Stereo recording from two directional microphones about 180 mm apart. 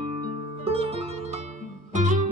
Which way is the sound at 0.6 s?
35° right (ahead or behind).